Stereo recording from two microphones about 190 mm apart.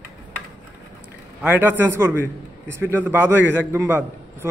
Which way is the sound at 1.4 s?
10° right (ahead or behind).